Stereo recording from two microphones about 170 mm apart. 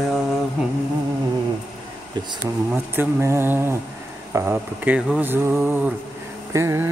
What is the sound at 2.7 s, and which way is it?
Music, 15° right (ahead or behind).